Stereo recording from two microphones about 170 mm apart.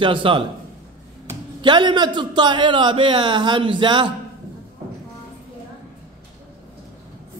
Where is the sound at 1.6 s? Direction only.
25° right (ahead or behind).